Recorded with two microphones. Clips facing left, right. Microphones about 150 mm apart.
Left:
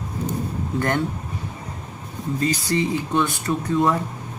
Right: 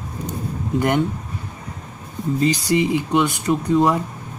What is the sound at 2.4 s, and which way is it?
Speech, 15° right (ahead or behind).